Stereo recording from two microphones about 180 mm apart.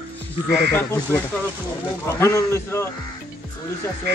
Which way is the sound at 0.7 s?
10° left (ahead or behind).